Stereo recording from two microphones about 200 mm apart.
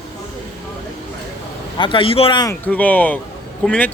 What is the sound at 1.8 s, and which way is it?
Speech, 25° left (ahead or behind).